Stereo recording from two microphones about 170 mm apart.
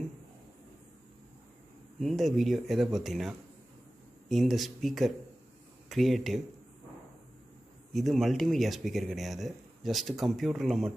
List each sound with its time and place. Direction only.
2.0 s speech: centre (ahead or behind)
7.9 s speech: centre (ahead or behind)